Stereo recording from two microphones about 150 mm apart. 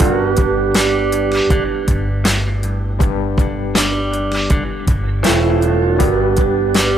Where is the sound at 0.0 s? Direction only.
Centre (ahead or behind).